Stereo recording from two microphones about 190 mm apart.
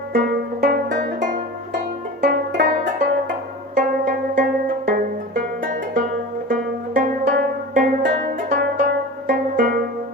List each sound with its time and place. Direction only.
0.1 s music: 55° right (ahead or behind)
3.8 s zither: 50° right (ahead or behind)
4.9 s music: 50° right (ahead or behind)